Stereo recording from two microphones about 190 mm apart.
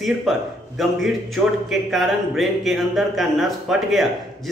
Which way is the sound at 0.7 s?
Centre (ahead or behind).